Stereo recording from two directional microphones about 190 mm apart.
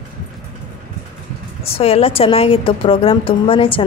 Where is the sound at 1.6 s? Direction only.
30° left (ahead or behind).